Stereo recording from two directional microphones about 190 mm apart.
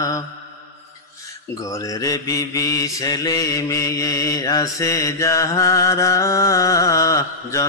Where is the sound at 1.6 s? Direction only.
15° left (ahead or behind).